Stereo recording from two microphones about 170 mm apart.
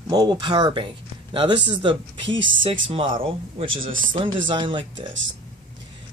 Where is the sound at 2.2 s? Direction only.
90° right.